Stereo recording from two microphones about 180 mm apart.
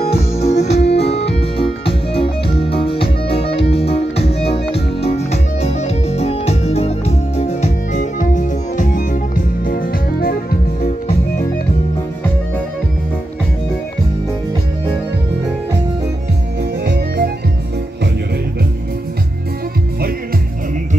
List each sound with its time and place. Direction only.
0.0 s music: 35° left (ahead or behind); by 11.6 s 60° left (ahead or behind)
16.8 s organ: 65° right (ahead or behind)